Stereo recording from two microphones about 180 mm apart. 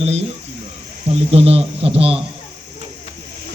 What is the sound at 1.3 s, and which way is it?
Speech, 35° right (ahead or behind).